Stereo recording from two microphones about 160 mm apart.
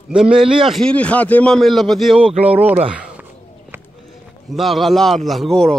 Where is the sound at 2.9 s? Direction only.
5° right (ahead or behind).